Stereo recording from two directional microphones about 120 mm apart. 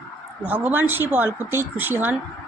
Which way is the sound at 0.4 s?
15° right (ahead or behind).